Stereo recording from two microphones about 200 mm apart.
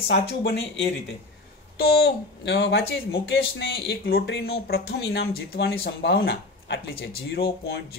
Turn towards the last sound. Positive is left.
turn(degrees=50)  # may be behind; listen again after turning